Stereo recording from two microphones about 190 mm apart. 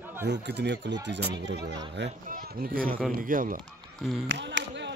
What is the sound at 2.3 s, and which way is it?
Speech, 50° right (ahead or behind).